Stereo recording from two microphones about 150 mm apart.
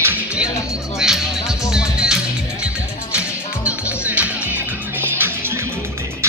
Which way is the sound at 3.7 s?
10° right (ahead or behind).